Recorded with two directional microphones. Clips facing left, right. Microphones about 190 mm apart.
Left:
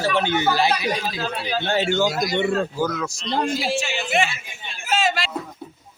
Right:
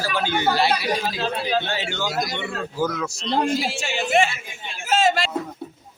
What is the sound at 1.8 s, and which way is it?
Speech, 45° left (ahead or behind).